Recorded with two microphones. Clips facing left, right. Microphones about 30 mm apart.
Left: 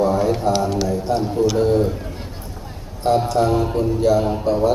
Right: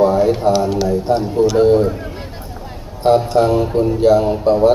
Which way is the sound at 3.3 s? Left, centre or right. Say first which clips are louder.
Right 4 dB; centre.